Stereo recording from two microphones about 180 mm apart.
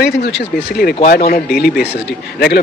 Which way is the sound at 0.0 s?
65° left (ahead or behind).